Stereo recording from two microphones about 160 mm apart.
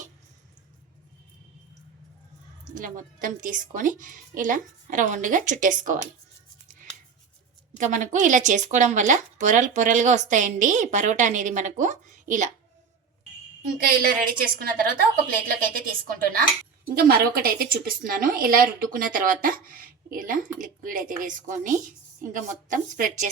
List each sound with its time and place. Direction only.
2.7 s a woman's voice: 60° right (ahead or behind)
7.8 s speech: 50° right (ahead or behind)
13.7 s a woman's voice: 60° right (ahead or behind)